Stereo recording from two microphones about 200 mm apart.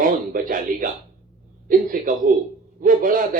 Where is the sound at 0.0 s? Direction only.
45° right (ahead or behind).